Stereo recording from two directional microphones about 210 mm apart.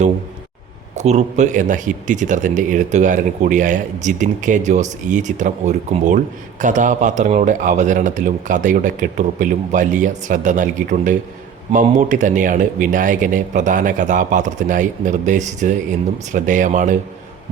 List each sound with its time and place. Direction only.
0.9 s speech: 30° right (ahead or behind)